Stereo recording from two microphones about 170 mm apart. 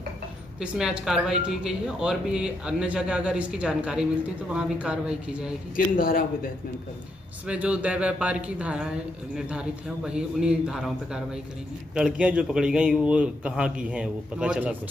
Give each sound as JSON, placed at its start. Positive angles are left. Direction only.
{"t": 0.6, "sound": "a woman's voice", "side_deg": -5}
{"t": 5.9, "sound": "a man's voice", "side_deg": 55}
{"t": 7.4, "sound": "a woman's voice", "side_deg": -5}